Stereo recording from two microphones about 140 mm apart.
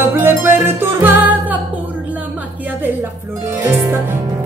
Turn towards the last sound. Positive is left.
turn(degrees=-20)  # may be behind; listen again after turning